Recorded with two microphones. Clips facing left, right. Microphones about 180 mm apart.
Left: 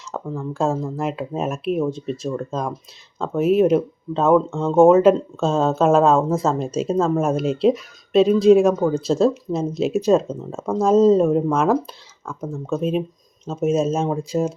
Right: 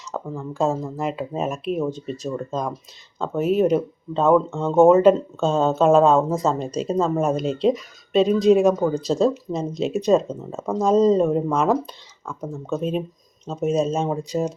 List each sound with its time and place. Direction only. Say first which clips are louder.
0.1 s speech: left 2 dB; centre (ahead or behind)